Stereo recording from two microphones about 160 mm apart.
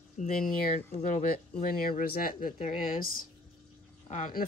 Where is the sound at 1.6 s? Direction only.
65° left (ahead or behind).